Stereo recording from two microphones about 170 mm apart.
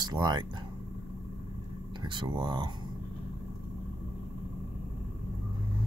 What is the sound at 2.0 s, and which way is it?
Speech, 30° right (ahead or behind).